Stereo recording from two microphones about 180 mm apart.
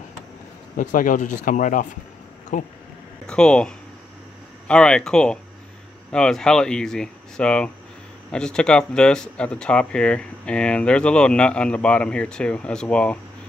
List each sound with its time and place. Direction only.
0.7 s speech: 45° left (ahead or behind)
3.3 s speech: 5° left (ahead or behind)